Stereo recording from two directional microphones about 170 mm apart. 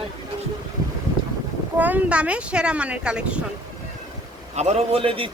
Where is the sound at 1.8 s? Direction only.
10° right (ahead or behind).